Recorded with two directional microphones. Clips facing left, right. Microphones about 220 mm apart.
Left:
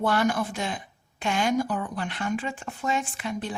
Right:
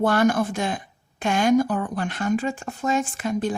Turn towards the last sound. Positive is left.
turn(degrees=-45)  # may be behind; listen again after turning